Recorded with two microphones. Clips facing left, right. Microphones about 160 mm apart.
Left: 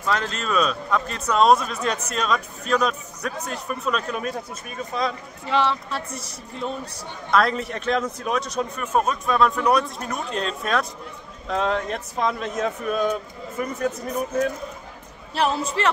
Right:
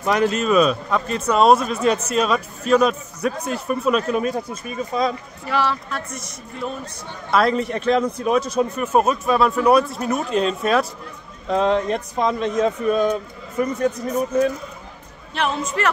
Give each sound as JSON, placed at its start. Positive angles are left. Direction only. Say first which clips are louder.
{"t": 0.0, "sound": "a man's voice", "louder": "right 7 dB", "side_deg": -15}
{"t": 5.5, "sound": "speech", "louder": "even", "side_deg": 25}
{"t": 7.2, "sound": "a man's voice", "louder": "right 3 dB", "side_deg": 0}
{"t": 15.3, "sound": "a man's voice", "louder": "even", "side_deg": 35}